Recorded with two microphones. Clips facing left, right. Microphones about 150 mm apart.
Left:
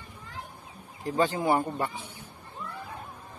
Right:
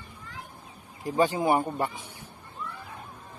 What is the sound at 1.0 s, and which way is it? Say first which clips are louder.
Mantra: right 2 dB; 10° right (ahead or behind).